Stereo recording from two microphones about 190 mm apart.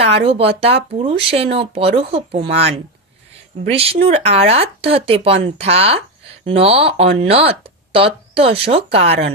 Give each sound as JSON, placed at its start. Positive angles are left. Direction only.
{"t": 0.2, "sound": "speech", "side_deg": -30}